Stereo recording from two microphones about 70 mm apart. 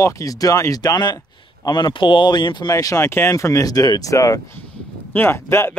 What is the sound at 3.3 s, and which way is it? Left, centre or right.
Speech, left.